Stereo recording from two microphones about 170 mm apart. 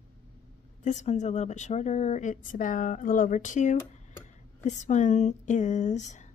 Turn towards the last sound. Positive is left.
turn(degrees=45)  # may be behind; listen again after turning